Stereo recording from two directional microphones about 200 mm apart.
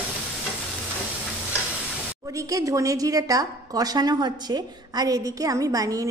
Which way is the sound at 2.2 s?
15° right (ahead or behind).